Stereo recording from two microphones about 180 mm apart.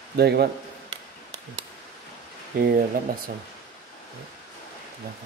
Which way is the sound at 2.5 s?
60° right (ahead or behind).